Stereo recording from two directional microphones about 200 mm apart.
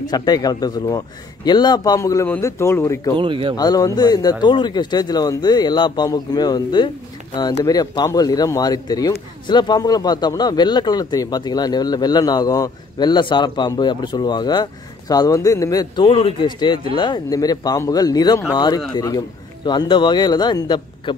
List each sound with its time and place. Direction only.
0.0 s a man's voice: 20° left (ahead or behind)
3.2 s speech: 25° right (ahead or behind)
3.5 s a man's voice: 20° left (ahead or behind)